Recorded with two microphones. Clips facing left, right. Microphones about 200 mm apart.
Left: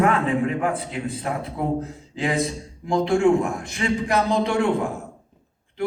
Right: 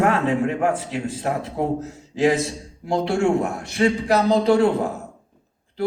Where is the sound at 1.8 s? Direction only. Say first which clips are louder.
Right 7 dB; 45° right (ahead or behind).